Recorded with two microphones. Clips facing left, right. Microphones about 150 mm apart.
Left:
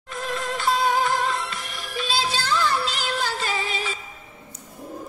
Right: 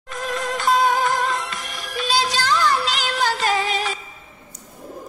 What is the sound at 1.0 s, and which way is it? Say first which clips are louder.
Music: right 2 dB; 45° right (ahead or behind).